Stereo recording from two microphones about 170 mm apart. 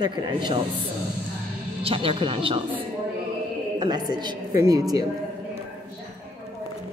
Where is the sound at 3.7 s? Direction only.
25° right (ahead or behind).